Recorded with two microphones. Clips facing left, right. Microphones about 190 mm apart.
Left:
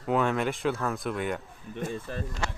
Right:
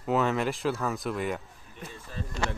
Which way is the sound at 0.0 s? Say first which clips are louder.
Even; centre (ahead or behind).